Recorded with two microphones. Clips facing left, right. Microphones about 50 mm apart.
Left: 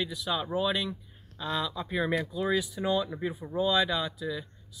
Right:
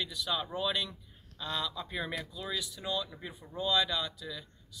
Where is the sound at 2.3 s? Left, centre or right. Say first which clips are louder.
Left 10 dB; left.